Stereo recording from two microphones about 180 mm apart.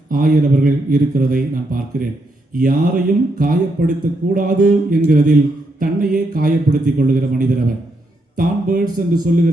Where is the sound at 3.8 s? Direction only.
55° right (ahead or behind).